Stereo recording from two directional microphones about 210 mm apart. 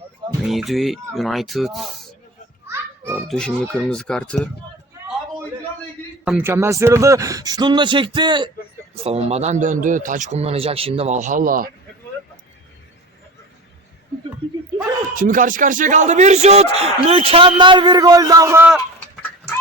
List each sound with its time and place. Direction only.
0.4 s speech: centre (ahead or behind)
2.6 s children playing: 10° right (ahead or behind)
3.2 s speech: 5° left (ahead or behind)
6.2 s speech: 10° right (ahead or behind); by 11.7 s 40° right (ahead or behind)
15.1 s speech: 40° right (ahead or behind); by 18.8 s 10° right (ahead or behind)